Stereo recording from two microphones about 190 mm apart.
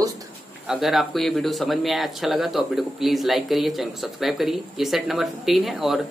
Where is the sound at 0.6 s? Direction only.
Centre (ahead or behind).